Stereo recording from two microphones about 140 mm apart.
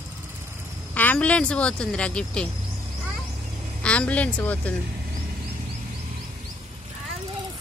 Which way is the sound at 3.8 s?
10° left (ahead or behind).